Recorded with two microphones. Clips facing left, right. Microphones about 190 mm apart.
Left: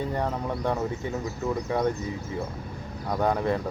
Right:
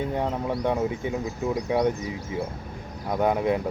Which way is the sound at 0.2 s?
15° right (ahead or behind).